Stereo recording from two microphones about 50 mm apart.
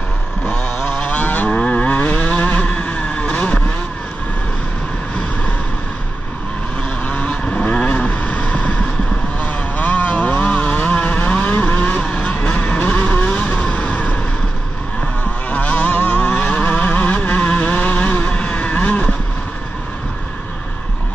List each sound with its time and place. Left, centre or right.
0.5 s vehicle: centre
0.9 s moo: left
1.6 s vehicle: left
7.1 s vehicle: left
15.5 s vehicle: left